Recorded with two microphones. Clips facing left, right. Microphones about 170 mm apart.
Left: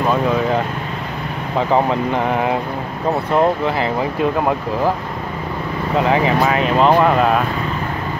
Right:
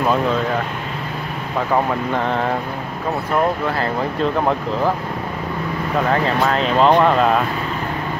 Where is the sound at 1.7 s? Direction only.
20° left (ahead or behind).